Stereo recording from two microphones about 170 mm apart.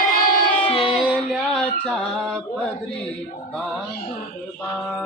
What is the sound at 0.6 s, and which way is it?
Music, 35° left (ahead or behind).